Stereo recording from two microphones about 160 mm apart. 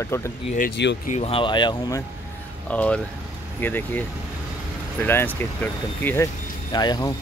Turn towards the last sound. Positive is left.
turn(degrees=25)  # may be behind; listen again after turning